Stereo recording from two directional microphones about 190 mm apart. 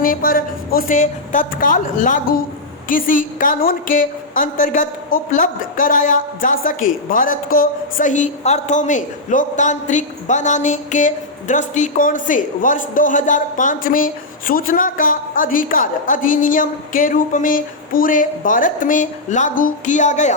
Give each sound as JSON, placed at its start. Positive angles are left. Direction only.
{"t": 0.0, "sound": "a woman's voice", "side_deg": 50}